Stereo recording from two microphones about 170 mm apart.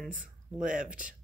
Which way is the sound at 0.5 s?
50° right (ahead or behind).